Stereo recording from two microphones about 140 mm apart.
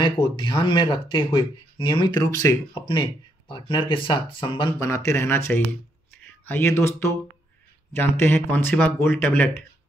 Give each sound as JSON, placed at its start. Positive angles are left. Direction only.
{"t": 0.0, "sound": "speech", "side_deg": 35}
{"t": 4.7, "sound": "speech", "side_deg": 20}